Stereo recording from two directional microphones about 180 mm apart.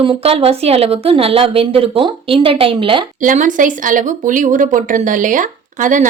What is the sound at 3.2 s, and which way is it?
Speech, 45° right (ahead or behind).